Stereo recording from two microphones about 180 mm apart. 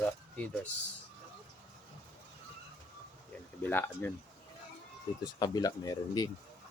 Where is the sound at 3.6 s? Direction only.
10° left (ahead or behind).